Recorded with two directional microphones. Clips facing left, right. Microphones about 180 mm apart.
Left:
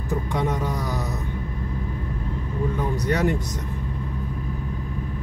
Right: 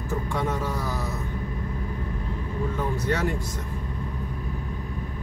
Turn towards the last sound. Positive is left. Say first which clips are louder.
# left 4 dB
turn(degrees=15)  # may be behind; listen again after turning